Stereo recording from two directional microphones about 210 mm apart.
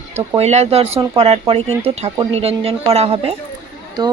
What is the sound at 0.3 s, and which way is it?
A woman's voice, 30° right (ahead or behind).